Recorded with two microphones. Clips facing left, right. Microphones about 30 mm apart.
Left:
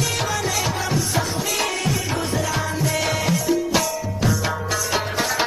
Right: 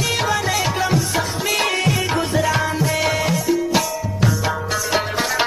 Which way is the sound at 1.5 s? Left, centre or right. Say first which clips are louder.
Right 6 dB; right.